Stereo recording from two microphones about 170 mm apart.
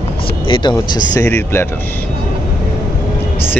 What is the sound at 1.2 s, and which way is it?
Speech, 15° left (ahead or behind).